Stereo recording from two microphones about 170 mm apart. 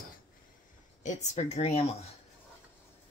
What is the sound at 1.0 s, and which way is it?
Speech, 45° left (ahead or behind).